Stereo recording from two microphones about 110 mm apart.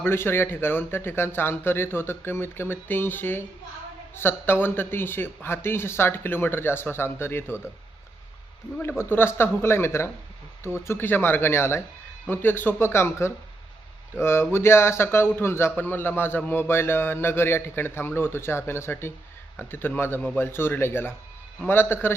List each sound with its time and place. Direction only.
0.0 s speech: 20° left (ahead or behind)
8.8 s speech: 20° left (ahead or behind)